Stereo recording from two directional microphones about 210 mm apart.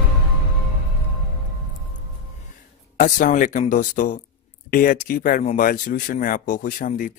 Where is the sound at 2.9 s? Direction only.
40° left (ahead or behind).